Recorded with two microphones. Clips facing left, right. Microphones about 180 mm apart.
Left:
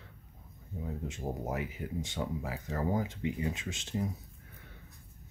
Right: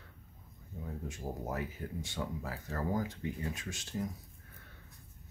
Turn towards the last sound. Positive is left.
turn(degrees=20)  # may be behind; listen again after turning